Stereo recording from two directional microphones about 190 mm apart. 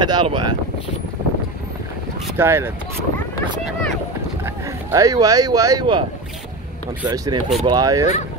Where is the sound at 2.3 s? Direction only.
10° right (ahead or behind).